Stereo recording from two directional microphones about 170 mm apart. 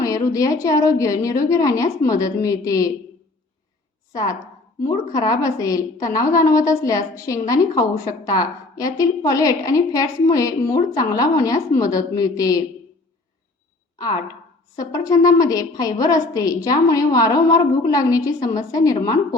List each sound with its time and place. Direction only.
0.0 s a woman's voice: 20° left (ahead or behind)
4.1 s a woman's voice: 20° left (ahead or behind)
14.8 s a woman's voice: 20° left (ahead or behind)